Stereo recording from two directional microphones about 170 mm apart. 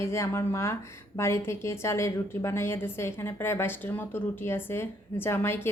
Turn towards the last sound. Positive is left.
turn(degrees=15)  # may be behind; listen again after turning